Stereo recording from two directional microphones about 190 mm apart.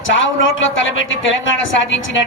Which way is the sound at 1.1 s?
90° left.